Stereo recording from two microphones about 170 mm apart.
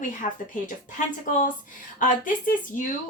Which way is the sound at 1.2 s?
50° left (ahead or behind).